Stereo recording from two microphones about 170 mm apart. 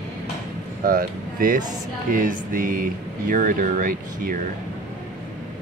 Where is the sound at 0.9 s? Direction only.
55° right (ahead or behind).